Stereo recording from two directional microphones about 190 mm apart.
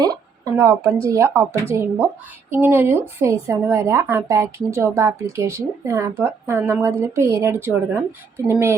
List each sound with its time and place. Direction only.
0.0 s speech: 20° right (ahead or behind)